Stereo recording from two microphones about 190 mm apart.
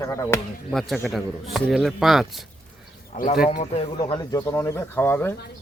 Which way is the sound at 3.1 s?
45° left (ahead or behind).